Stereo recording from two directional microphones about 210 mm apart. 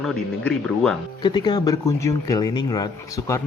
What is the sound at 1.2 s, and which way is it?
Speech, 20° left (ahead or behind).